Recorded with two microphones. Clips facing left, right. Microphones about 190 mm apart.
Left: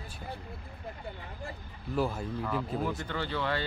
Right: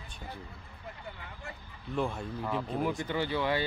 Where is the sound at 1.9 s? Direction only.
5° left (ahead or behind).